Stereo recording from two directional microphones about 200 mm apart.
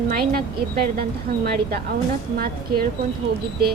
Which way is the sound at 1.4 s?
50° right (ahead or behind).